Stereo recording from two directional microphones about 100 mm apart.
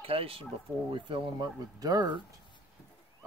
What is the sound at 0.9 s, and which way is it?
Speech, 55° right (ahead or behind).